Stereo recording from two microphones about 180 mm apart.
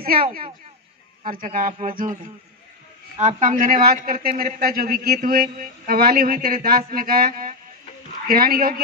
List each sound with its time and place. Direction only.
0.0 s a man's voice: 55° right (ahead or behind)
3.2 s a man's voice: 45° right (ahead or behind)